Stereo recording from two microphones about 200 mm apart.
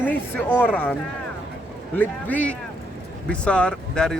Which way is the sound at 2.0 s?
10° left (ahead or behind).